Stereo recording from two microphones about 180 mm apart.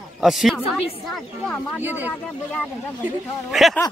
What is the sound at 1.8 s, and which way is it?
Speech, 10° right (ahead or behind).